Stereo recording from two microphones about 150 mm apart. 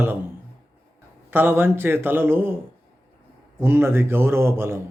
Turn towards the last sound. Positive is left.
turn(degrees=-15)  # may be behind; listen again after turning